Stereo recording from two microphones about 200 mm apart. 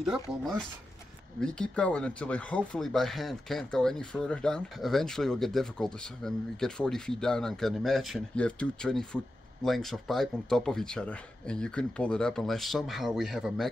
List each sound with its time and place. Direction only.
0.0 s speech: centre (ahead or behind)